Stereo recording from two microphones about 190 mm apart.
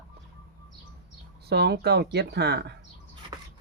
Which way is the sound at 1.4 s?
60° right (ahead or behind).